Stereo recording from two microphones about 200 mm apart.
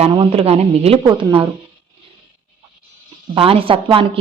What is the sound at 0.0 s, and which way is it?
A woman's voice, 30° right (ahead or behind).